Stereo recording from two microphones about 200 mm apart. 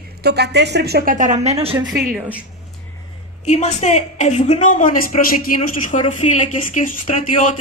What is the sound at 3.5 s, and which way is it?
A woman's voice, 35° left (ahead or behind).